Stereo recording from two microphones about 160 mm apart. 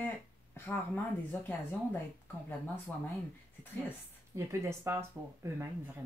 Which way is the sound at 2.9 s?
10° left (ahead or behind).